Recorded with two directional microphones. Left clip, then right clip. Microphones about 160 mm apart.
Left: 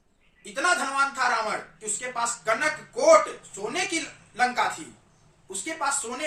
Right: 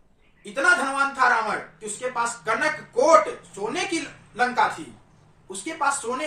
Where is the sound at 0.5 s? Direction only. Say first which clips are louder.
Right 3 dB; 5° left (ahead or behind).